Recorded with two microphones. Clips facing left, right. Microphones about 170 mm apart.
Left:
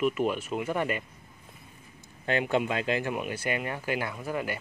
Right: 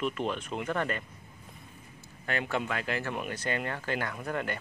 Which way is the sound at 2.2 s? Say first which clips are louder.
Left 5 dB; 20° left (ahead or behind).